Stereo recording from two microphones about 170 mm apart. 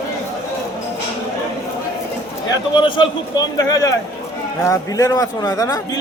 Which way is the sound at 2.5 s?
30° left (ahead or behind).